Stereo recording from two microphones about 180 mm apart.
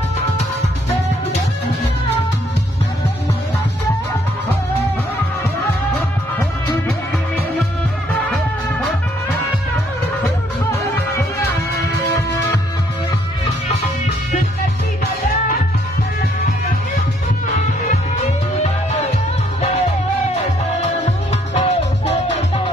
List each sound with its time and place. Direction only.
18.6 s music: 40° left (ahead or behind)
21.5 s music: 35° left (ahead or behind)